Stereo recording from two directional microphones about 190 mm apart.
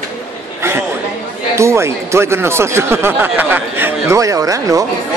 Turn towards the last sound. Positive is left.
turn(degrees=-15)  # may be behind; listen again after turning